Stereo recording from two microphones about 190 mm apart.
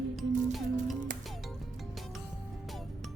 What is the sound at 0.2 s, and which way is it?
Music, centre (ahead or behind).